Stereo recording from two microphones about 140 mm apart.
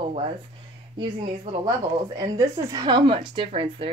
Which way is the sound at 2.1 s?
25° right (ahead or behind).